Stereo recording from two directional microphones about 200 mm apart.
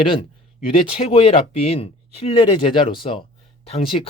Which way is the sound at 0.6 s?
30° left (ahead or behind).